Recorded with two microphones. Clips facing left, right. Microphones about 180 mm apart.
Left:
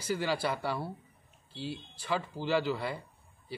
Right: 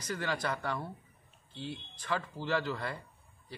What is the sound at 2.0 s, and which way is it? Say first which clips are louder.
Speech: left 2 dB; 10° left (ahead or behind).